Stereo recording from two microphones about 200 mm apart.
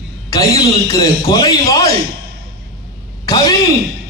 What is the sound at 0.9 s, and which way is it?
Speech, 15° left (ahead or behind).